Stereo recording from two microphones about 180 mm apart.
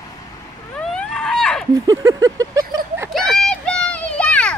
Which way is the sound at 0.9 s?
5° left (ahead or behind).